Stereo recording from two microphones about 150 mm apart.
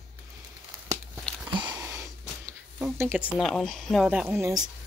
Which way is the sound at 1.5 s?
30° right (ahead or behind).